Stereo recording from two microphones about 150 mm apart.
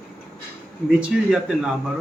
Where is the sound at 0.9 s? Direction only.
5° right (ahead or behind).